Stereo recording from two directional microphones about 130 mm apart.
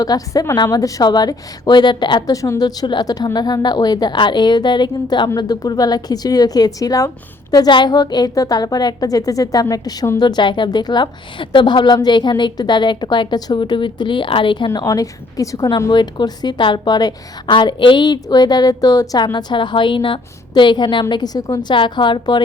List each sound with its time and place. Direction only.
0.0 s a woman's voice: 30° left (ahead or behind)
14.7 s a woman's voice: 30° left (ahead or behind)